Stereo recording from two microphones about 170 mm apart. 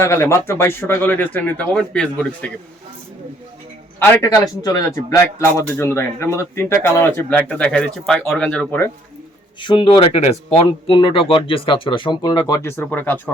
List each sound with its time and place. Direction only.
0.0 s speech: 15° left (ahead or behind)
4.0 s speech: 15° left (ahead or behind)
9.6 s speech: 30° left (ahead or behind); by 13.3 s 10° left (ahead or behind)